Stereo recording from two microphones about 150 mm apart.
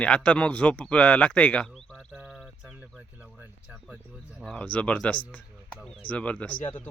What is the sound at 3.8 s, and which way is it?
Speech, 5° right (ahead or behind).